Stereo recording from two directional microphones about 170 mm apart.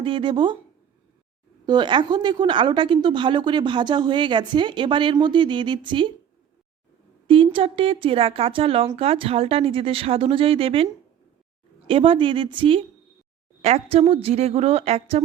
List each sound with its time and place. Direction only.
0.0 s a woman's voice: 30° right (ahead or behind)
1.6 s a woman's voice: 25° right (ahead or behind)
7.3 s speech: 30° right (ahead or behind)
11.9 s a woman's voice: 30° right (ahead or behind)